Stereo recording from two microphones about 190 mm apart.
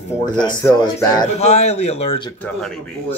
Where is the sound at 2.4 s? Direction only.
5° left (ahead or behind).